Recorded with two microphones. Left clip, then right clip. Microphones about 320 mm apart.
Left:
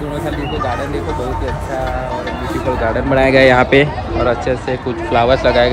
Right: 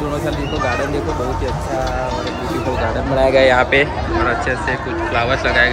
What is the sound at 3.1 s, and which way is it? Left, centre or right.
Speech, left.